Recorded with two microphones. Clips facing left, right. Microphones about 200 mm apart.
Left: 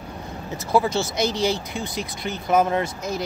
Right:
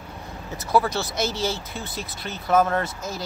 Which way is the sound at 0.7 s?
20° left (ahead or behind).